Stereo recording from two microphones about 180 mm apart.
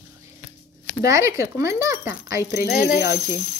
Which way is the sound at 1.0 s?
15° right (ahead or behind).